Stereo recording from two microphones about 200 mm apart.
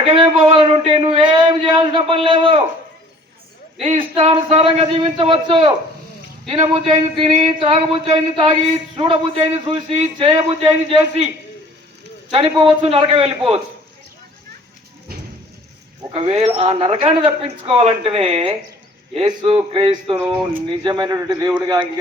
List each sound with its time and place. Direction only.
0.1 s a man's voice: 25° right (ahead or behind)
3.8 s speech: 30° right (ahead or behind)
12.3 s speech: 30° right (ahead or behind)
15.1 s a sound: 50° right (ahead or behind)
16.0 s speech: 30° right (ahead or behind)